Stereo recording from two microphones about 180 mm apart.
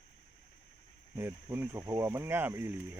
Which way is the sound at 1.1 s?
10° right (ahead or behind).